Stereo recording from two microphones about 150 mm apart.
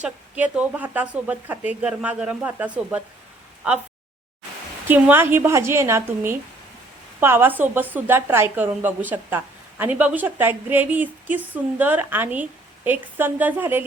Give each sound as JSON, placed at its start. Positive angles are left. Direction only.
{"t": 0.0, "sound": "a woman's voice", "side_deg": -10}
{"t": 4.9, "sound": "a woman's voice", "side_deg": -15}